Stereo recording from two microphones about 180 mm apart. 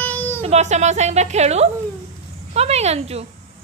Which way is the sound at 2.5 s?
35° right (ahead or behind).